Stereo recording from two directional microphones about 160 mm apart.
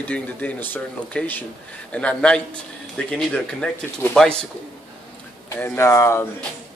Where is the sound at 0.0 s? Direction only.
10° left (ahead or behind).